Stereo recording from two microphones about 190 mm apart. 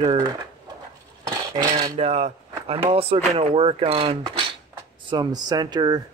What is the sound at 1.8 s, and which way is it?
Speech, 35° right (ahead or behind).